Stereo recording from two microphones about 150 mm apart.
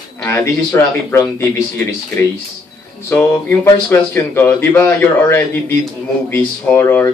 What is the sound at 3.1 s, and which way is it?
Speech, 15° left (ahead or behind).